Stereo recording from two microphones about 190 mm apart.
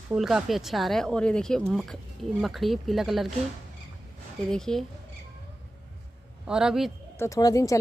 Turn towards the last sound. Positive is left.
turn(degrees=20)  # may be behind; listen again after turning